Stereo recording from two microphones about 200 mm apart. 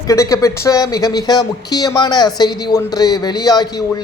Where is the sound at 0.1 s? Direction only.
15° left (ahead or behind).